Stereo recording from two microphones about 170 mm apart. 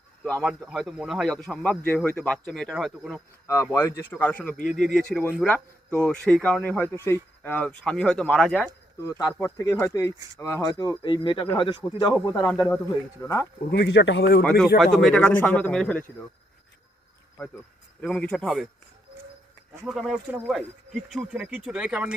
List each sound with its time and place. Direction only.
0.2 s speech: 5° left (ahead or behind)
3.4 s speech: 15° left (ahead or behind)
9.0 s speech: 20° left (ahead or behind)
12.5 s speech: 5° left (ahead or behind)
13.2 s speech: 15° left (ahead or behind)
13.7 s speech: 75° left (ahead or behind); by 14.4 s 90° left
14.4 s speech: centre (ahead or behind)
18.0 s speech: 5° left (ahead or behind)
19.9 s speech: centre (ahead or behind)